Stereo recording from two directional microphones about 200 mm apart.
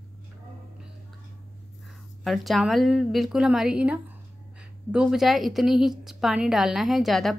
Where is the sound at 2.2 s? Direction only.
Centre (ahead or behind).